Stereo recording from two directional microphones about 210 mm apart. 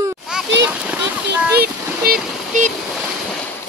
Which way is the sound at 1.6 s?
45° right (ahead or behind).